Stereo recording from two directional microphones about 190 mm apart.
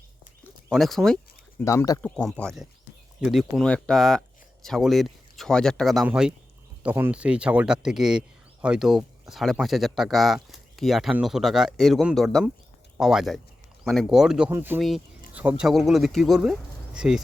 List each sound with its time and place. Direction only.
0.7 s speech: centre (ahead or behind)
1.6 s speech: 15° left (ahead or behind); by 17.2 s 5° right (ahead or behind)